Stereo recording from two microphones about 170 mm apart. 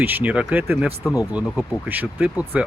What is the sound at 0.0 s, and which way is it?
Speech, 10° right (ahead or behind).